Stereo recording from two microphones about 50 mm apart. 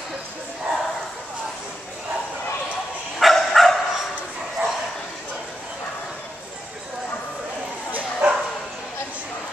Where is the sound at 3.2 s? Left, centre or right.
Centre.